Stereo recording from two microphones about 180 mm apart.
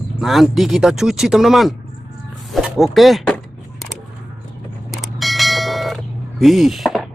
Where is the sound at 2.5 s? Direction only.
Centre (ahead or behind).